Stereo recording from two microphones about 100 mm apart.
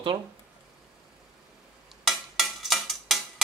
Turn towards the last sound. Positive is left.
turn(degrees=0)  # may be behind; listen again after turning